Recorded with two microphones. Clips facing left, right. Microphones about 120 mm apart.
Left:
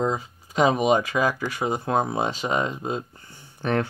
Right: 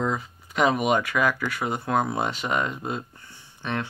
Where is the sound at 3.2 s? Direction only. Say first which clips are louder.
Left 6 dB; 45° left (ahead or behind).